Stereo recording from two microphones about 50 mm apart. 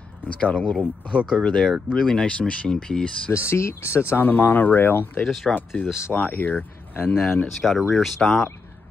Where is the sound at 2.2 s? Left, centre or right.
Left.